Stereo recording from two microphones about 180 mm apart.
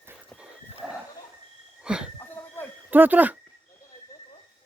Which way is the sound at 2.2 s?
10° left (ahead or behind).